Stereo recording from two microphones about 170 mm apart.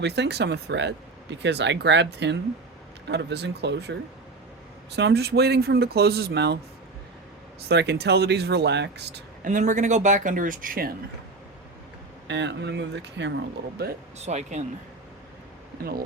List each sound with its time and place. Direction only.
0.0 s speech: 80° right
7.7 s speech: 80° right
9.4 s speech: 45° right (ahead or behind)
12.3 s speech: 90° right
14.2 s speech: 40° right (ahead or behind)
15.8 s speech: 65° right (ahead or behind)